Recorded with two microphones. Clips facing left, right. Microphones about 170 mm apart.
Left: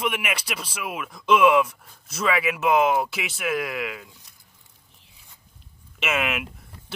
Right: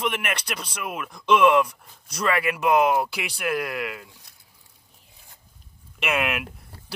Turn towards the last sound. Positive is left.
turn(degrees=0)  # may be behind; listen again after turning